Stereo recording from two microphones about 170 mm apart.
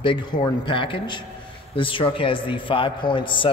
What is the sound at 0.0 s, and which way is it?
A man's voice, 30° left (ahead or behind).